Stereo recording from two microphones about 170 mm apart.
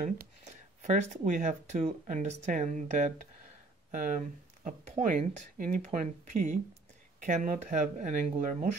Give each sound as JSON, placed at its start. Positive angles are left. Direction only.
{"t": 0.5, "sound": "speech", "side_deg": -45}